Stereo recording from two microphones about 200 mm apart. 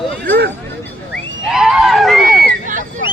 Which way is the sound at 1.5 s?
Centre (ahead or behind).